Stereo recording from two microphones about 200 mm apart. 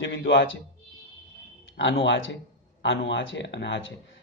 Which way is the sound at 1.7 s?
65° left (ahead or behind).